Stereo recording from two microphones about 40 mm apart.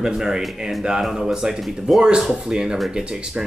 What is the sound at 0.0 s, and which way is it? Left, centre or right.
Speech, centre.